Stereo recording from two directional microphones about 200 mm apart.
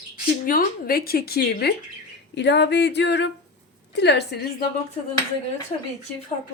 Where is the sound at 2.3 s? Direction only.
60° left (ahead or behind).